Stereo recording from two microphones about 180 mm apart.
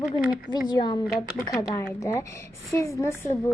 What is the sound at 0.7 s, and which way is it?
A woman's voice, 25° left (ahead or behind).